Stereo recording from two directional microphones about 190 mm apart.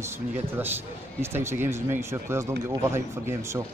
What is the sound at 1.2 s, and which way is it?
Speech, 15° right (ahead or behind).